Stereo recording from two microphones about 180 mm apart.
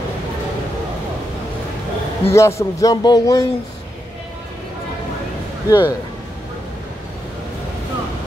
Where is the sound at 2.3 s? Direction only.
15° left (ahead or behind).